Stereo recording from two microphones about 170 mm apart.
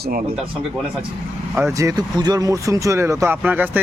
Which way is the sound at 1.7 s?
20° right (ahead or behind).